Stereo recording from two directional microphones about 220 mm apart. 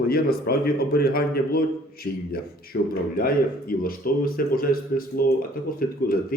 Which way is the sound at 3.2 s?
40° left (ahead or behind).